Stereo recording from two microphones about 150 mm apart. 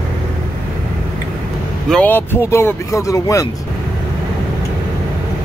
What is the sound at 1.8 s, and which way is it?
Speech, 10° left (ahead or behind).